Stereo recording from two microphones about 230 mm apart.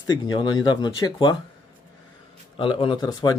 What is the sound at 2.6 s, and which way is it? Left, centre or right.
Speech, left.